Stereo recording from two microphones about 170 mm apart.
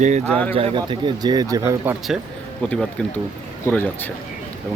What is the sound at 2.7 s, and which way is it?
Speech, 5° left (ahead or behind).